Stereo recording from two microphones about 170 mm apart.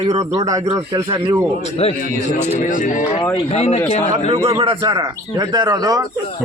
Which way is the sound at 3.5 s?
40° left (ahead or behind).